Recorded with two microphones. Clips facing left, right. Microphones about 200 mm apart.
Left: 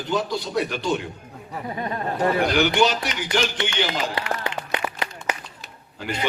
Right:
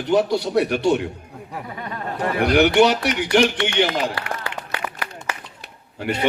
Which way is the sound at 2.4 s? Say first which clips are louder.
Right 7 dB; 65° right (ahead or behind).